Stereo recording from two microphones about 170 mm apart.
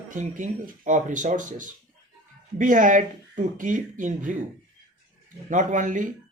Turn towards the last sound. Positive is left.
turn(degrees=-50)  # may be behind; listen again after turning